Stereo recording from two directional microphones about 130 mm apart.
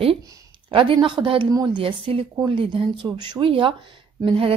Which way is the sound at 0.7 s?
40° right (ahead or behind).